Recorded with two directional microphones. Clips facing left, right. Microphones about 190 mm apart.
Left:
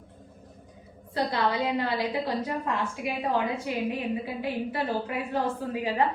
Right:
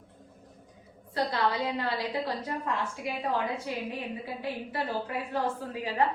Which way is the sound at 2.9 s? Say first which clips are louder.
Left 3 dB; 15° left (ahead or behind).